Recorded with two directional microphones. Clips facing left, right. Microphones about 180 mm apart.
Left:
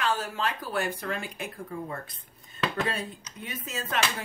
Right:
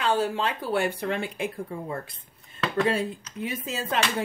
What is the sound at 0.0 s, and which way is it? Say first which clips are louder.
Speech: right 4 dB; 30° right (ahead or behind).